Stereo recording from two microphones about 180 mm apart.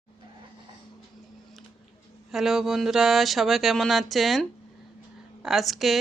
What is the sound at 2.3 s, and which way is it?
Speech, centre (ahead or behind).